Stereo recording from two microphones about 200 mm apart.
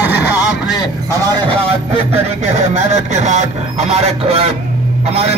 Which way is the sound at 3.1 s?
35° right (ahead or behind).